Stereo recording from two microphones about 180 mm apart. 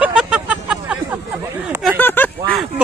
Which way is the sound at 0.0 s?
5° right (ahead or behind).